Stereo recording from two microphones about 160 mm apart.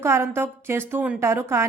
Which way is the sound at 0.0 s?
15° right (ahead or behind).